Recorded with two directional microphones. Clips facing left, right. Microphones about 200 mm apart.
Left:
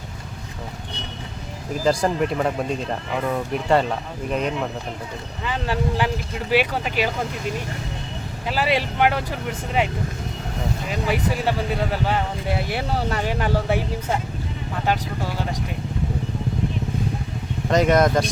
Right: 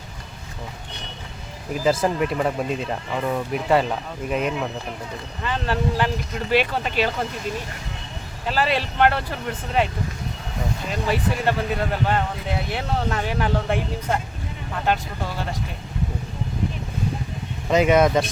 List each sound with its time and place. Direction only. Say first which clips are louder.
1.8 s speech: even; centre (ahead or behind)
5.4 s speech: even; 10° left (ahead or behind)
8.4 s speech: even; 10° left (ahead or behind)
11.0 s speech: even; 10° left (ahead or behind)
17.7 s speech: even; 5° right (ahead or behind)